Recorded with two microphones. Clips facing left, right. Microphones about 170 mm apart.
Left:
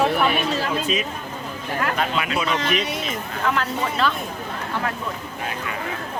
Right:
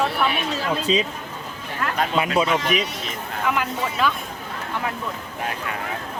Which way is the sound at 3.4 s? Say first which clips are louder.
Left 1 dB; 10° right (ahead or behind).